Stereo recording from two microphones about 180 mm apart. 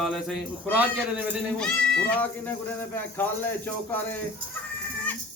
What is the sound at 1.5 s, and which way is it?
Speech, 5° left (ahead or behind).